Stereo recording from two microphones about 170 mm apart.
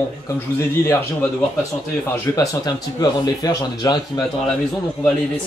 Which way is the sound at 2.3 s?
25° left (ahead or behind).